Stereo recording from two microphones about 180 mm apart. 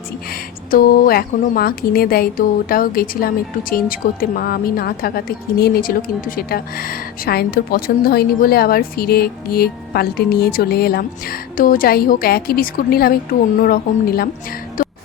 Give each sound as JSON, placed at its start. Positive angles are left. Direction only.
{"t": 0.7, "sound": "a woman's voice", "side_deg": 55}